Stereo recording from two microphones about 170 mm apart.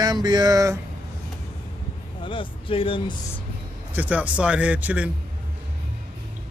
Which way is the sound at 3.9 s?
10° right (ahead or behind).